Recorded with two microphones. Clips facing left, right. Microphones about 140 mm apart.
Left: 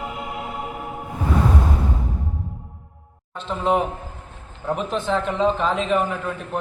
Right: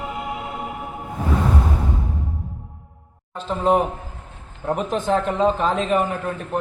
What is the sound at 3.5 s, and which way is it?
Speech, centre (ahead or behind).